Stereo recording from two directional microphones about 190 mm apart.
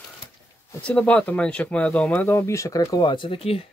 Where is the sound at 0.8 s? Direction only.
5° left (ahead or behind); by 3.6 s 30° left (ahead or behind).